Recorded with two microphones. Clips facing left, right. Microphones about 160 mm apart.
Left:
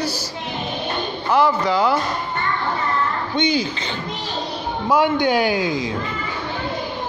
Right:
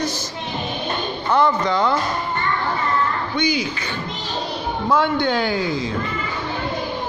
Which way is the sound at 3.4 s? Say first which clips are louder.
Left 2 dB; 25° left (ahead or behind).